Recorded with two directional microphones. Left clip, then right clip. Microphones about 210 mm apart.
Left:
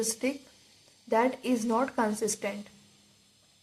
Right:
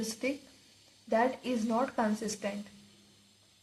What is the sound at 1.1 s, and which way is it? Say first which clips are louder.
A woman's voice: left 3 dB; 35° left (ahead or behind).